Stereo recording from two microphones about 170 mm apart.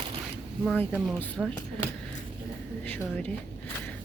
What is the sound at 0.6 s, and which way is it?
Speech, 10° left (ahead or behind).